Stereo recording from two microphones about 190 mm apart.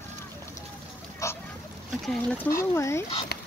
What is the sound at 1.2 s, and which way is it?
Duck, 15° left (ahead or behind).